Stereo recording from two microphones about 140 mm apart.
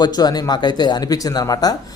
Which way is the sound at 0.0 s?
30° left (ahead or behind).